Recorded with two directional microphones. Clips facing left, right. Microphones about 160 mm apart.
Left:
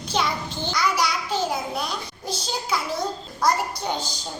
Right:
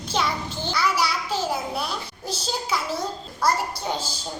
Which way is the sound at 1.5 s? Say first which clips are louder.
Even; 5° right (ahead or behind).